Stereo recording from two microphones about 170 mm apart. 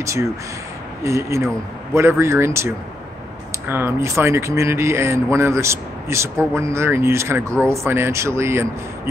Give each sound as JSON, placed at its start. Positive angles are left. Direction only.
{"t": 1.0, "sound": "speech", "side_deg": -15}